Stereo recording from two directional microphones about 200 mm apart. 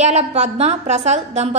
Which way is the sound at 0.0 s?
35° right (ahead or behind).